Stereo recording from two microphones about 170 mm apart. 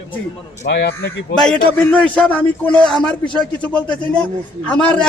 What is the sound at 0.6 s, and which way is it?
Speech, 85° left.